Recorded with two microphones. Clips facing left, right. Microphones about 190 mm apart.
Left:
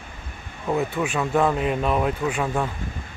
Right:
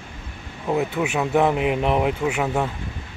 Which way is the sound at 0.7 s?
10° right (ahead or behind).